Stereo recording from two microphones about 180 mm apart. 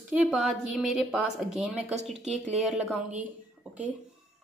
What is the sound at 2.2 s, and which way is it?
Speech, 40° right (ahead or behind).